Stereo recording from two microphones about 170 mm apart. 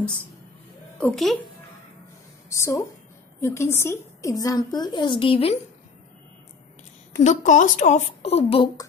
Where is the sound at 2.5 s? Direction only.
20° left (ahead or behind); by 5.6 s 35° left (ahead or behind).